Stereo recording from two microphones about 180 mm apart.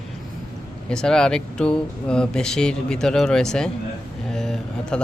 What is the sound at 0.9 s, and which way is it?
Speech, 5° left (ahead or behind).